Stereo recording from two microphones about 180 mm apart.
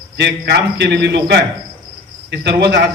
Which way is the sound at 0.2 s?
70° right (ahead or behind).